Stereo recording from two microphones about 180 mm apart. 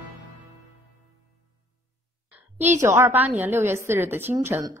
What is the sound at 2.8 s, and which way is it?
A woman's voice, 15° right (ahead or behind).